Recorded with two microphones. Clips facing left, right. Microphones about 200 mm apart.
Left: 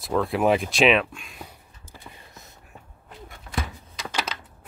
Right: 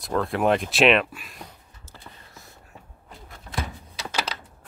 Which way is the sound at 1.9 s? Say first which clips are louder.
Left 1 dB; 15° left (ahead or behind).